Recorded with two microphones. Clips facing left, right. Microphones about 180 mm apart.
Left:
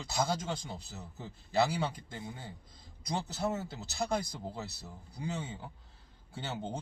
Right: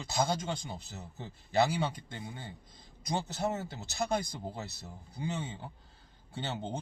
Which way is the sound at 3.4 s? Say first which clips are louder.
Right 1 dB; 20° right (ahead or behind).